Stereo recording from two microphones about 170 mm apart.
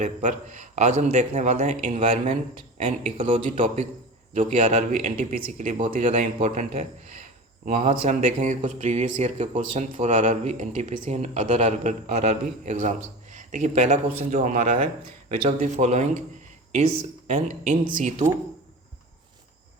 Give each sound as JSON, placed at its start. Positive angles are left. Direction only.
{"t": 0.0, "sound": "speech", "side_deg": -45}
{"t": 17.2, "sound": "speech", "side_deg": -45}